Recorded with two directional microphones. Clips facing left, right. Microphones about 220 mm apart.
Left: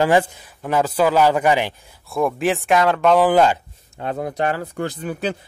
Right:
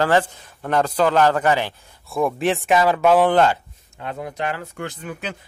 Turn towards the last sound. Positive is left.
turn(degrees=35)  # may be behind; listen again after turning